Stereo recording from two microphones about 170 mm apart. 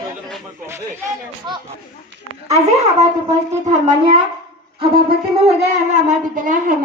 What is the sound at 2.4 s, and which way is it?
Speech, 40° right (ahead or behind).